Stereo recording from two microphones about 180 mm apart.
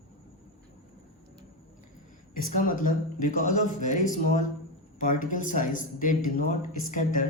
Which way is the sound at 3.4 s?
45° left (ahead or behind).